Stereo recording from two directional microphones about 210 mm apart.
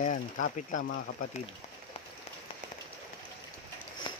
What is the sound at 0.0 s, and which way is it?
Speech, 35° left (ahead or behind).